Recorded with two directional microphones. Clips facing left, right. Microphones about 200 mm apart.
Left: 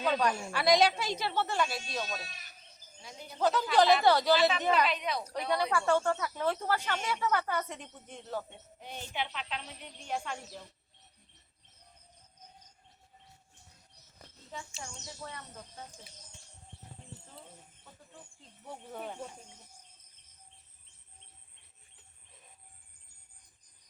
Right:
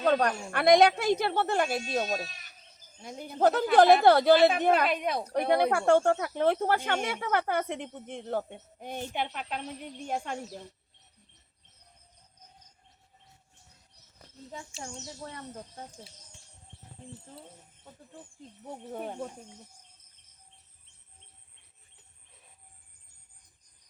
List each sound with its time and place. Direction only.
0.0 s speech: 60° right (ahead or behind)
15.2 s speech: 35° right (ahead or behind)
18.6 s speech: 45° right (ahead or behind)